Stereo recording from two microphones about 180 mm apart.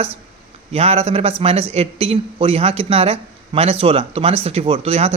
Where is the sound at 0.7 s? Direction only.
35° right (ahead or behind).